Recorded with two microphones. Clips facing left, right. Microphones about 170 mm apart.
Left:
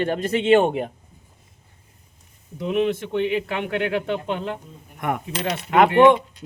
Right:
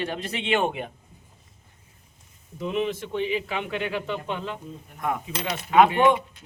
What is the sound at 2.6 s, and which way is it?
Speech, 65° left (ahead or behind).